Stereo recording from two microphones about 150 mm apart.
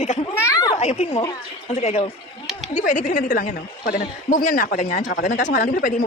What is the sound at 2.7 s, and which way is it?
A man's voice, 60° left (ahead or behind).